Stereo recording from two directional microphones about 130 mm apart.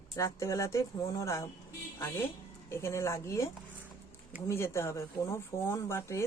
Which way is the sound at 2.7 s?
20° left (ahead or behind).